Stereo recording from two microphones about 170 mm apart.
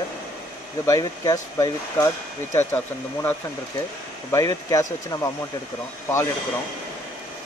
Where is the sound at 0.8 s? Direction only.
20° left (ahead or behind).